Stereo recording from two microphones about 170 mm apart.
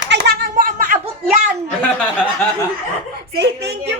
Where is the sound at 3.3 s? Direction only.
80° right.